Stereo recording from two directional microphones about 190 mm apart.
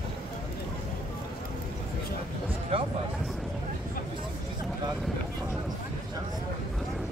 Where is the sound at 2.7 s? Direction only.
30° right (ahead or behind).